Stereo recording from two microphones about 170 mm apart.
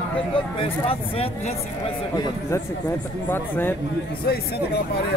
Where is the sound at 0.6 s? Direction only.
35° left (ahead or behind).